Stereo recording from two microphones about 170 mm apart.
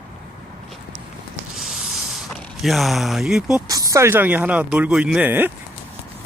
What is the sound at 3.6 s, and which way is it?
Speech, 20° right (ahead or behind).